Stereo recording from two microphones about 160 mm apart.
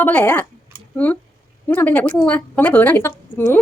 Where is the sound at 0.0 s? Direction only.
10° left (ahead or behind).